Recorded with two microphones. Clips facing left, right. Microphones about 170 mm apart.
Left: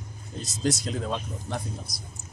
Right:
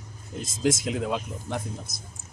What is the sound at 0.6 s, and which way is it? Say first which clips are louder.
Speech: right 3 dB; 90° right.